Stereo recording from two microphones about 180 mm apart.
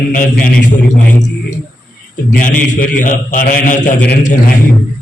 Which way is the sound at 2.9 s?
45° left (ahead or behind).